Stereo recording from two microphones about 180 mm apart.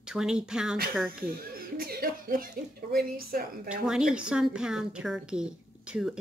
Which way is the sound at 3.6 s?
5° right (ahead or behind).